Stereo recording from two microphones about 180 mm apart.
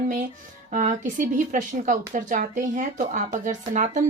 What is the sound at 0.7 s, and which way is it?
Speech, 45° right (ahead or behind).